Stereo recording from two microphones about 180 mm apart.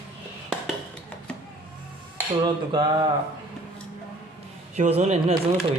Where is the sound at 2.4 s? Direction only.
25° right (ahead or behind).